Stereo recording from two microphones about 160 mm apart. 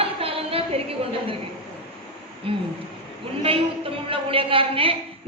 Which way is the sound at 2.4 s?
35° right (ahead or behind).